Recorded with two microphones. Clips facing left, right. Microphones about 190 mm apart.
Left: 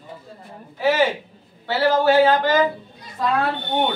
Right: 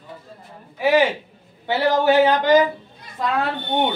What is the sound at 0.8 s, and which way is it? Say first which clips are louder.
A woman's voice: right 2 dB; 15° right (ahead or behind).